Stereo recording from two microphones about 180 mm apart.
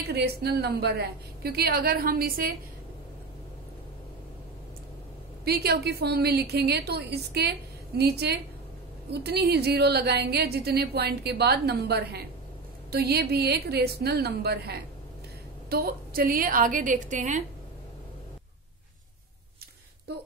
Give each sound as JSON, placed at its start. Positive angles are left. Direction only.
{"t": 0.1, "sound": "a woman's voice", "side_deg": -60}
{"t": 5.4, "sound": "a woman's voice", "side_deg": -60}